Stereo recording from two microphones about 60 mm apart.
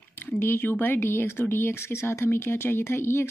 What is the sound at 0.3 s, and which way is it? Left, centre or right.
Speech, left.